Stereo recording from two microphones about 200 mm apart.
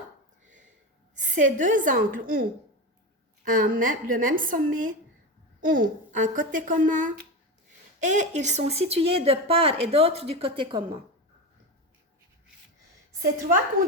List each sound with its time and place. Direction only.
1.2 s a woman's voice: 40° right (ahead or behind); by 10.8 s 25° right (ahead or behind)
13.8 s speech: 90° right